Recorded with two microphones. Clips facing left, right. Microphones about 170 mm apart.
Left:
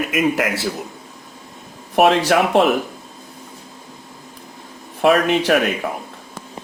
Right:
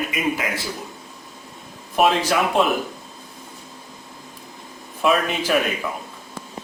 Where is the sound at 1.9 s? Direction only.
70° left (ahead or behind).